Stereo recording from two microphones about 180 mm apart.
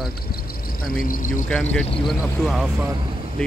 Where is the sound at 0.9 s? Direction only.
50° left (ahead or behind).